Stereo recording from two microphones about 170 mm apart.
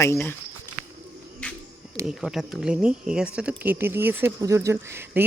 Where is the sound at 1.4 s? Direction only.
5° left (ahead or behind).